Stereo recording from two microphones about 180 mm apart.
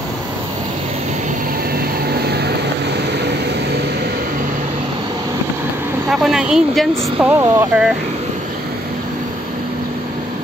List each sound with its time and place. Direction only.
2.0 s vehicle: 65° right (ahead or behind)
6.0 s speech: 5° right (ahead or behind)
7.2 s speech: 15° right (ahead or behind)